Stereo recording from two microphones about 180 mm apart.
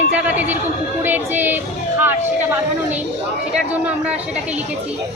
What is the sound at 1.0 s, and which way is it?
A woman's voice, 10° right (ahead or behind).